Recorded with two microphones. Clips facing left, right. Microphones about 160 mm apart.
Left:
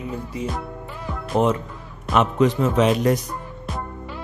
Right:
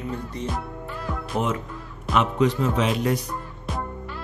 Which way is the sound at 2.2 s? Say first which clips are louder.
Left 3 dB; 50° left (ahead or behind).